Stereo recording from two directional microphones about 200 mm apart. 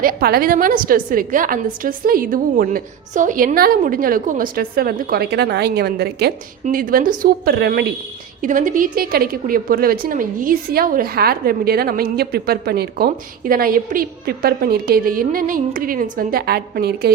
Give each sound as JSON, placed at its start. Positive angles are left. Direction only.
{"t": 0.0, "sound": "a woman's voice", "side_deg": -50}
{"t": 8.4, "sound": "a woman's voice", "side_deg": -40}